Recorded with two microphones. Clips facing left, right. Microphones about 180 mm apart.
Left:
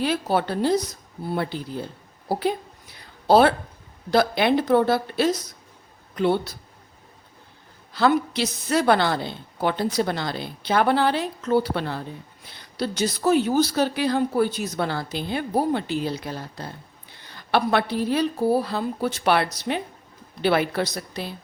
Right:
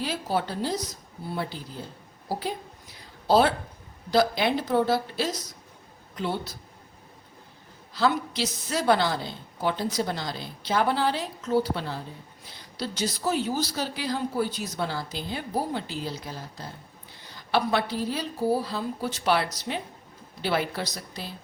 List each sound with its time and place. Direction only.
0.0 s a woman's voice: 65° left (ahead or behind)
3.0 s a sound: 60° left (ahead or behind)
4.1 s a woman's voice: 60° left (ahead or behind)
7.9 s a woman's voice: 60° left (ahead or behind)